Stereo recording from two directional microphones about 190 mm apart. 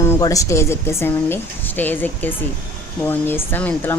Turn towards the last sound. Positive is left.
turn(degrees=10)  # may be behind; listen again after turning